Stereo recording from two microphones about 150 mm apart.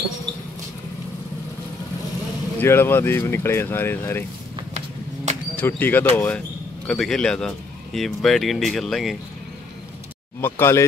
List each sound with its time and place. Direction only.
2.6 s speech: 15° left (ahead or behind)
5.3 s a sound: 50° right (ahead or behind)
5.6 s speech: 10° left (ahead or behind)
10.4 s speech: 15° left (ahead or behind)